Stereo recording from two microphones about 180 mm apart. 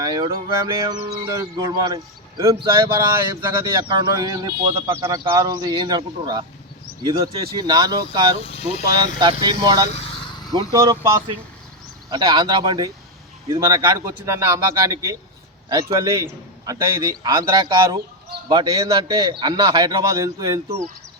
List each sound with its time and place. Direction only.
0.0 s a man's voice: 20° right (ahead or behind)
8.4 s speech: 35° left (ahead or behind)
8.9 s a man's voice: 25° right (ahead or behind)
12.1 s a man's voice: 25° right (ahead or behind)